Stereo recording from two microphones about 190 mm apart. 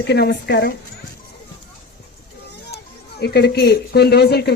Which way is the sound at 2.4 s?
60° left (ahead or behind).